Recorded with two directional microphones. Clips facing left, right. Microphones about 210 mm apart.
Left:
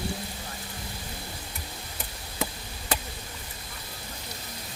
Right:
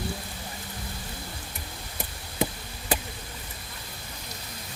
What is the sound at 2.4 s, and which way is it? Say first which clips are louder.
Chop: right 4 dB; 20° right (ahead or behind).